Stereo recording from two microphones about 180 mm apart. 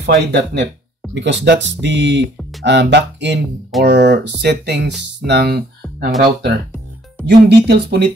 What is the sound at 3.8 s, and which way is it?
Speech, 65° right (ahead or behind).